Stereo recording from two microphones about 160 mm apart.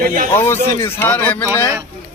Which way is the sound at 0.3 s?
15° left (ahead or behind).